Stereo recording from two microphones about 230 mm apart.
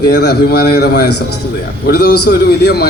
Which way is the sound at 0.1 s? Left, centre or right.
Left.